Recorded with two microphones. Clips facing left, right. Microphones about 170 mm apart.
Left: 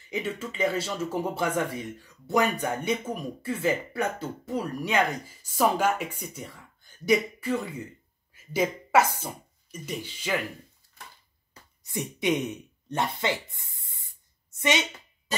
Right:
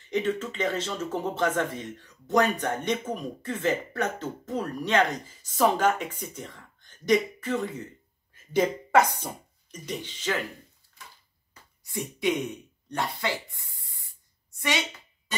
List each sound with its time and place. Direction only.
0.1 s speech: 10° left (ahead or behind)
11.8 s speech: 20° left (ahead or behind)
14.5 s a sound: 20° left (ahead or behind)